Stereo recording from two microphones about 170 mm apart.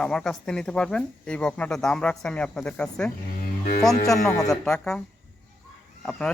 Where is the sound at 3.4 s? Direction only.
55° left (ahead or behind).